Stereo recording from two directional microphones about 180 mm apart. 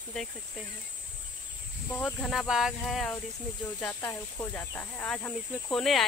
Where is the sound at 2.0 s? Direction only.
Centre (ahead or behind).